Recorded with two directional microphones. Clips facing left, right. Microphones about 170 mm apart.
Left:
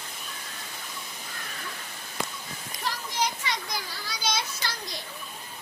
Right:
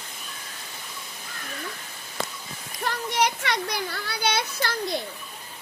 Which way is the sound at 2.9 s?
70° right (ahead or behind).